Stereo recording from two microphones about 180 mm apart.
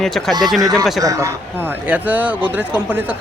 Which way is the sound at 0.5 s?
20° right (ahead or behind).